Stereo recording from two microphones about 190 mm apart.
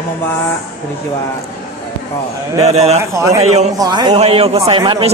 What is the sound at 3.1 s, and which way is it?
Speech, 15° right (ahead or behind).